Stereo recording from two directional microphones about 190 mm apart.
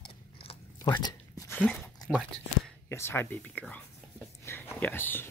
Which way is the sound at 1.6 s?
5° left (ahead or behind).